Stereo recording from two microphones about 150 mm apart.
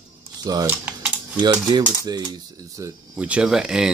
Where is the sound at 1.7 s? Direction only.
30° right (ahead or behind).